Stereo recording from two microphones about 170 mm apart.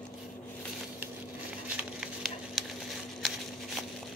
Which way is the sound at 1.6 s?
5° right (ahead or behind).